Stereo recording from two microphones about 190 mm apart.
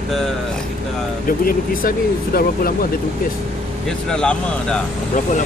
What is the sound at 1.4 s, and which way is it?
Speech, 50° left (ahead or behind).